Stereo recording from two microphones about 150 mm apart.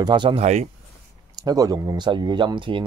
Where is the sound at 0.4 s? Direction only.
50° right (ahead or behind).